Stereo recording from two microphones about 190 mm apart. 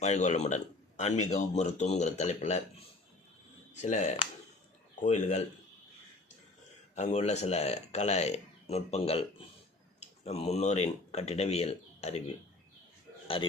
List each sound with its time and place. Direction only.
0.0 s a man's voice: 35° left (ahead or behind)
3.8 s a man's voice: 40° left (ahead or behind)
6.9 s a man's voice: 35° left (ahead or behind)
13.2 s a man's voice: 30° left (ahead or behind)